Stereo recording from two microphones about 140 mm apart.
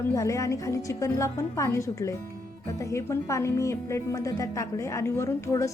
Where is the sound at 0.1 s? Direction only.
20° left (ahead or behind).